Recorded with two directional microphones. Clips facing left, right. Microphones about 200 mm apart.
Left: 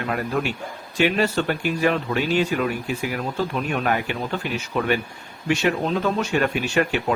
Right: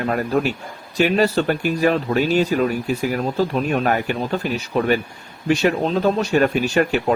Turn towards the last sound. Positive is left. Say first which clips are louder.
# right 4 dB
turn(degrees=-40)  # may be behind; listen again after turning